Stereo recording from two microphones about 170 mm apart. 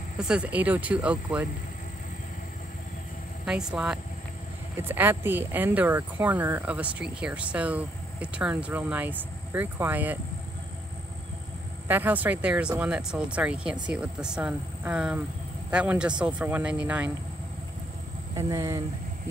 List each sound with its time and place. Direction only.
0.2 s speech: 5° right (ahead or behind)
3.4 s speech: 5° right (ahead or behind)
11.9 s speech: 10° right (ahead or behind)
18.3 s speech: 20° right (ahead or behind)